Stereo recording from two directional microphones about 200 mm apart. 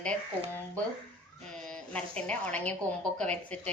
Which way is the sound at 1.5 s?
5° left (ahead or behind).